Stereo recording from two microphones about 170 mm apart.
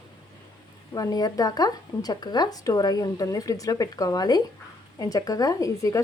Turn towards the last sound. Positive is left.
turn(degrees=20)  # may be behind; listen again after turning